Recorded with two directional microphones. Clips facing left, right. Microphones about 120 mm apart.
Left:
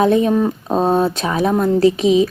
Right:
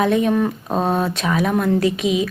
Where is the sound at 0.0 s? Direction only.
35° left (ahead or behind).